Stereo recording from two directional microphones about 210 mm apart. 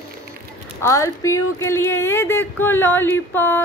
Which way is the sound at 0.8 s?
15° left (ahead or behind).